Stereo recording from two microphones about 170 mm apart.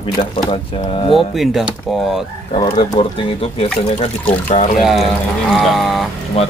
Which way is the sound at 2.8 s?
30° left (ahead or behind).